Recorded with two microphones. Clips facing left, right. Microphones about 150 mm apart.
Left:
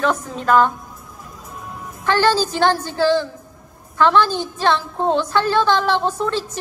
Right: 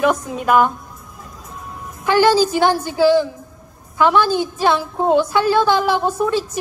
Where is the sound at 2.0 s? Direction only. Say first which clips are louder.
Right 3 dB; 10° right (ahead or behind).